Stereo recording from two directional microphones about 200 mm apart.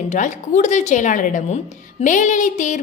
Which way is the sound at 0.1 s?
40° left (ahead or behind).